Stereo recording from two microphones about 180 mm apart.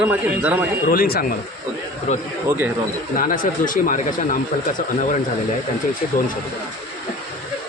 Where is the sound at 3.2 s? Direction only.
45° left (ahead or behind).